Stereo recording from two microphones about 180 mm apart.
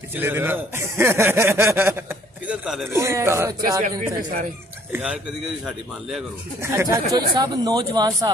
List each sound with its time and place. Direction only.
0.1 s speech: 10° right (ahead or behind)
2.9 s speech: 15° right (ahead or behind)
4.9 s speech: 5° right (ahead or behind)
6.6 s speech: 15° right (ahead or behind)